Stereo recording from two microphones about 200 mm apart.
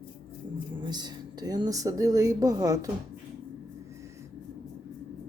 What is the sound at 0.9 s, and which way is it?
A woman's voice, 20° right (ahead or behind).